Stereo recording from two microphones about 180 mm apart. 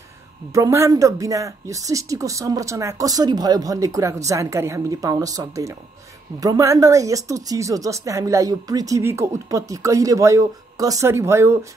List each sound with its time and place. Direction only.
0.5 s a woman's voice: 15° right (ahead or behind)